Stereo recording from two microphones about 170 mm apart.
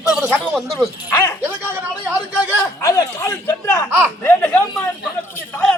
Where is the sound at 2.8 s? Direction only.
20° left (ahead or behind).